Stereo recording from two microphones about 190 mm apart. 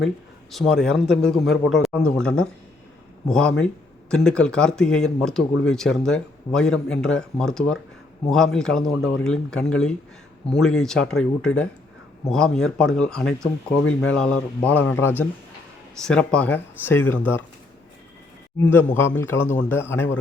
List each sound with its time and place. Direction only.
0.5 s speech: centre (ahead or behind)
13.8 s speech: 90° left
14.2 s speech: 5° left (ahead or behind)
18.7 s speech: 10° left (ahead or behind)